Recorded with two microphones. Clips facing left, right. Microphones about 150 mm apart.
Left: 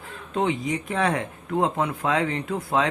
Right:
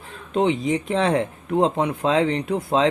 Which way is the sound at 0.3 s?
20° right (ahead or behind).